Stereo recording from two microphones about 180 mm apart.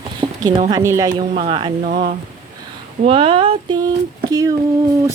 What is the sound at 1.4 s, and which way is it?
Speech, 30° right (ahead or behind).